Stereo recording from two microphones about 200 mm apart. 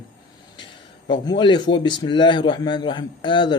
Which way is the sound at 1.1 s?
25° left (ahead or behind).